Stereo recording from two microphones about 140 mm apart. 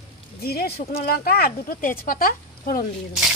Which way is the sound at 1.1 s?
90° left.